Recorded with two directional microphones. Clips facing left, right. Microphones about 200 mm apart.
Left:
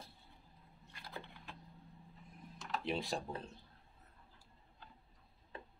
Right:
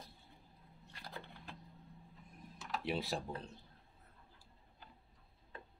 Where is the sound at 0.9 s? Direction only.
35° right (ahead or behind).